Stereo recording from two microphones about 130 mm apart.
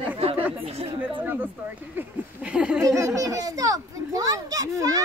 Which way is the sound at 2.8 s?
25° right (ahead or behind).